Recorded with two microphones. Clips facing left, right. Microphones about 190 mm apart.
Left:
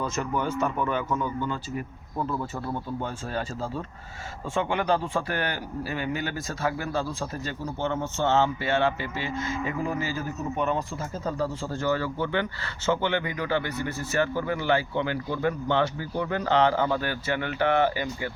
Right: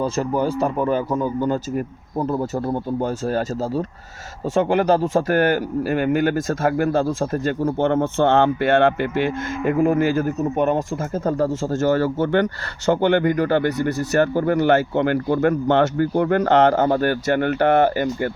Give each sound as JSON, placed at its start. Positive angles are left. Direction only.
{"t": 0.0, "sound": "speech", "side_deg": -35}
{"t": 13.8, "sound": "speech", "side_deg": -55}